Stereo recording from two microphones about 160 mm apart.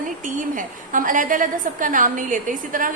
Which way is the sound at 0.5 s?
55° right (ahead or behind).